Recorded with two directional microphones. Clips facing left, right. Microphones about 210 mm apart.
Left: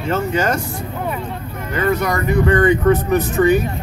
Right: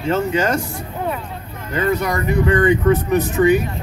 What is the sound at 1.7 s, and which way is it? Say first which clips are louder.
Speech: left 1 dB; 30° right (ahead or behind).